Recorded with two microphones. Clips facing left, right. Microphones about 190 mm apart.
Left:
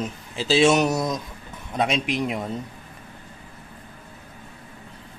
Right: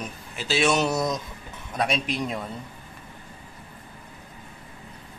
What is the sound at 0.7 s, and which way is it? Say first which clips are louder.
Speech: left 3 dB; 15° left (ahead or behind).